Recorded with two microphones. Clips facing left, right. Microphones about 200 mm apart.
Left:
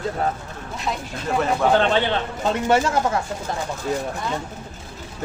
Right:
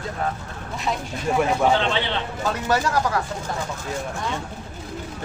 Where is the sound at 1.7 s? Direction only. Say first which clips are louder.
Left 5 dB; 45° left (ahead or behind).